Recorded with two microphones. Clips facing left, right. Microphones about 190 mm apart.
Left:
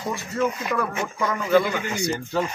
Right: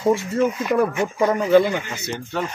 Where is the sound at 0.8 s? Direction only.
30° right (ahead or behind).